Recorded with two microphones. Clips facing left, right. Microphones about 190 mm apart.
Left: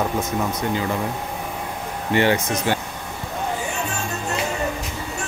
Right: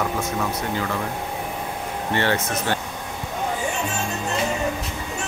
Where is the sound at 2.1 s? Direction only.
15° left (ahead or behind).